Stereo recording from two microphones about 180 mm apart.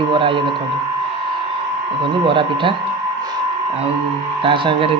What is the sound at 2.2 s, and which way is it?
Speech, 30° right (ahead or behind).